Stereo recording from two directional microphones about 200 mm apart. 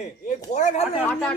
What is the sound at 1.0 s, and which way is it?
Speech, 10° left (ahead or behind).